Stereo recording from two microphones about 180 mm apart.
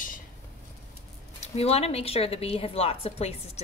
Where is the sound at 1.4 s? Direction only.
35° left (ahead or behind).